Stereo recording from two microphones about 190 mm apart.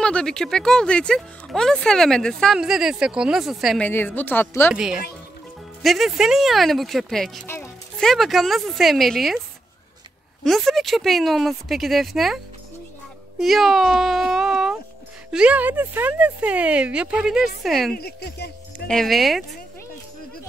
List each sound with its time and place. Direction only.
0.0 s speech: 5° left (ahead or behind)
4.7 s speech: 5° right (ahead or behind)
7.4 s a child's voice: 10° left (ahead or behind)
8.0 s speech: centre (ahead or behind)
10.4 s speech: centre (ahead or behind)
13.4 s speech: centre (ahead or behind)
17.9 s speech: 55° left (ahead or behind)
18.9 s speech: centre (ahead or behind)